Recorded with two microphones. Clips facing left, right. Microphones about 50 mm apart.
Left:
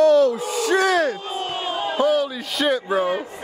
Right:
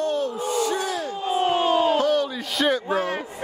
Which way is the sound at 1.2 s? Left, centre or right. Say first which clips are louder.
Right 6 dB; right.